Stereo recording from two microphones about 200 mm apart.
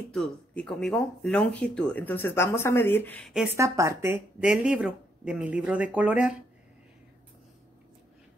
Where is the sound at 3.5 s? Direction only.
15° right (ahead or behind).